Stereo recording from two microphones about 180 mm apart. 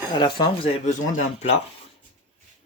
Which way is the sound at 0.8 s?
40° left (ahead or behind).